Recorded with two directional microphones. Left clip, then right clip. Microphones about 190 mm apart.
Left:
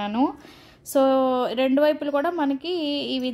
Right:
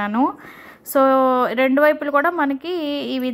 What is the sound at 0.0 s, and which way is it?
A woman's voice, centre (ahead or behind).